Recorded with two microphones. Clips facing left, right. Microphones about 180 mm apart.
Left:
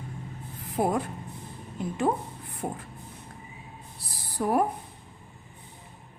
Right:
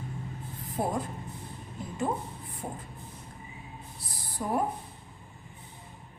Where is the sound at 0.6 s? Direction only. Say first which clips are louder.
Left 5 dB; 75° left (ahead or behind).